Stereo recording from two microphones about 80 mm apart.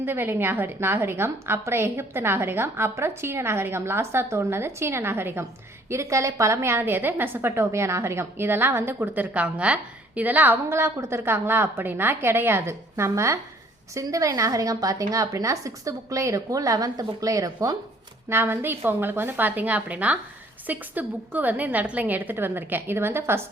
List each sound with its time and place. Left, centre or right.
0.0 s a woman's voice: right
18.3 s a woman's voice: right